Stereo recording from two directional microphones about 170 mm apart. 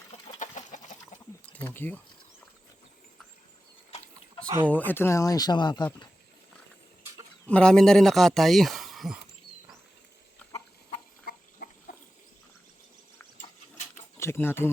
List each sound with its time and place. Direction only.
0.3 s chicken: 45° left (ahead or behind)
1.5 s speech: 10° left (ahead or behind)
4.6 s speech: 10° left (ahead or behind); by 5.8 s 25° left (ahead or behind)
7.4 s speech: 5° left (ahead or behind)
11.3 s a sound: 65° left (ahead or behind)
13.9 s a sound: 15° left (ahead or behind)